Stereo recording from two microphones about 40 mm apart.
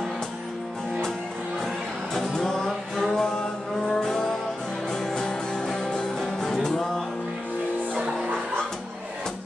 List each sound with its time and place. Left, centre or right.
2.1 s music: centre